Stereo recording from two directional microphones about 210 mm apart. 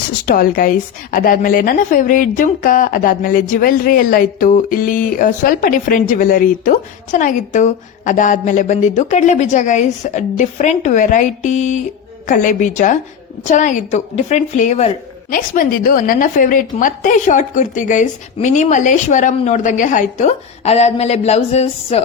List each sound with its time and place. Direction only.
0.3 s a woman's voice: 45° left (ahead or behind)